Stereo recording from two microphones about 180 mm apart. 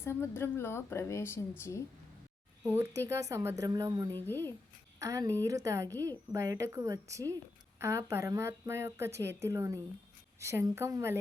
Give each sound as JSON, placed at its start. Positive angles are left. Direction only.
{"t": 0.0, "sound": "speech", "side_deg": 15}
{"t": 2.6, "sound": "a woman's voice", "side_deg": -15}
{"t": 4.1, "sound": "speech", "side_deg": 10}
{"t": 4.9, "sound": "a woman's voice", "side_deg": -20}